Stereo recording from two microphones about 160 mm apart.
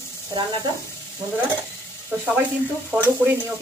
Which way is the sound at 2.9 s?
10° right (ahead or behind).